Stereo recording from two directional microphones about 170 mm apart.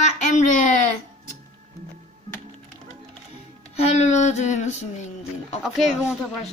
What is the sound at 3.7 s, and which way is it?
Child singing, 40° left (ahead or behind).